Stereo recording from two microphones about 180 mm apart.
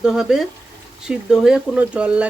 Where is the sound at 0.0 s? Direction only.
Centre (ahead or behind).